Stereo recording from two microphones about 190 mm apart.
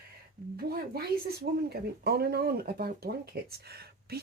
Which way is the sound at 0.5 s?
55° right (ahead or behind).